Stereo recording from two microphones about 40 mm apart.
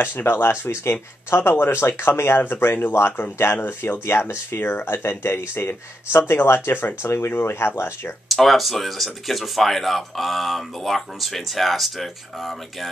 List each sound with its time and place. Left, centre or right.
0.0 s speech: left
1.3 s speech: left
4.0 s speech: left
7.0 s speech: left
8.3 s speech: centre